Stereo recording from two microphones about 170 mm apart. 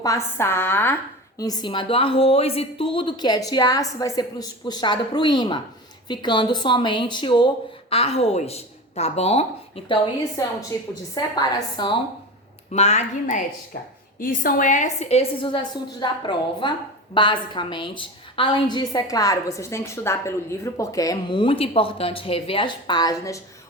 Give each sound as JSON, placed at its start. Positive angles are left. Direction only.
{"t": 0.0, "sound": "a woman's voice", "side_deg": 15}
{"t": 11.1, "sound": "a woman's voice", "side_deg": 25}
{"t": 12.7, "sound": "a woman's voice", "side_deg": 40}
{"t": 14.2, "sound": "a woman's voice", "side_deg": 55}